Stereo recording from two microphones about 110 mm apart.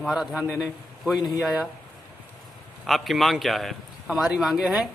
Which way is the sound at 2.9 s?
Centre (ahead or behind).